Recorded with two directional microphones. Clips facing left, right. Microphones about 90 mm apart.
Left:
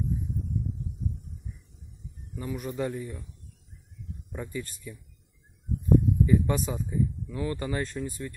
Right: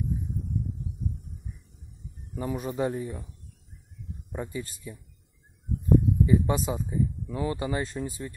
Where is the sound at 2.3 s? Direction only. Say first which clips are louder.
Right 3 dB; 30° right (ahead or behind).